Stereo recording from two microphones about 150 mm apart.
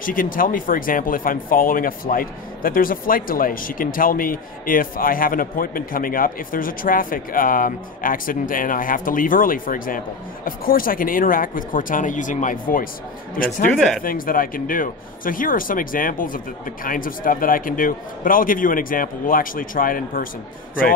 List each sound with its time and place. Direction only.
0.0 s speech: 65° left (ahead or behind)
13.7 s speech: centre (ahead or behind)
14.0 s speech: 70° left (ahead or behind)